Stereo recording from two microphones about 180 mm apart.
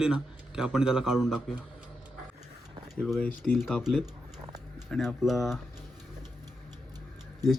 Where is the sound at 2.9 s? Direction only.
5° left (ahead or behind).